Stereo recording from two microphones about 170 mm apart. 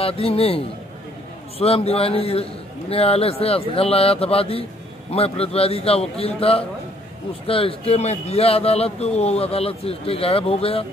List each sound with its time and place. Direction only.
0.0 s speech: 35° left (ahead or behind)